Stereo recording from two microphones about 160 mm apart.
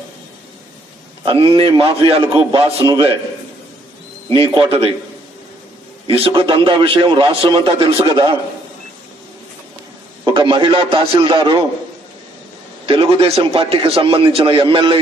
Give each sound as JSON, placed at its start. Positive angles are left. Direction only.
{"t": 1.2, "sound": "a man's voice", "side_deg": -30}
{"t": 4.6, "sound": "a man's voice", "side_deg": -35}
{"t": 6.0, "sound": "a man's voice", "side_deg": -35}
{"t": 10.2, "sound": "a man's voice", "side_deg": -30}
{"t": 12.8, "sound": "a man's voice", "side_deg": -35}